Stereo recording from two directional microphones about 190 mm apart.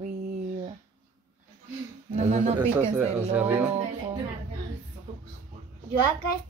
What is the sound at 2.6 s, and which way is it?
Speech, 10° right (ahead or behind).